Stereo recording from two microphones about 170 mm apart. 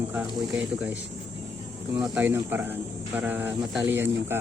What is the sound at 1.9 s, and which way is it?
Speech, 15° right (ahead or behind).